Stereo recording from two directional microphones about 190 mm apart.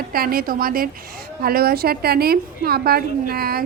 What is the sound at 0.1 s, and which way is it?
A woman's voice, 50° right (ahead or behind).